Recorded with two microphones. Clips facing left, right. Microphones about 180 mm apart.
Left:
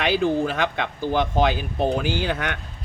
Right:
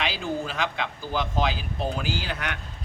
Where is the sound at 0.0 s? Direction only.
55° left (ahead or behind).